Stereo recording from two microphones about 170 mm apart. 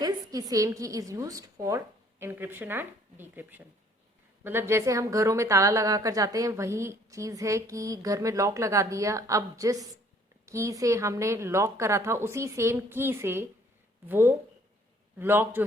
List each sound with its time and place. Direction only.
0.0 s a woman's voice: 20° right (ahead or behind)